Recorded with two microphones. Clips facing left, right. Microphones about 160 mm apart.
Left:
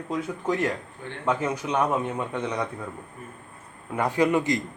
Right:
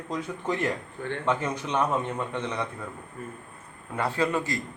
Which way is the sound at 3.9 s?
15° left (ahead or behind).